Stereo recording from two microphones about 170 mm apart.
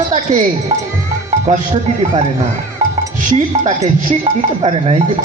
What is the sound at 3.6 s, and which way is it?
Speech, 40° right (ahead or behind).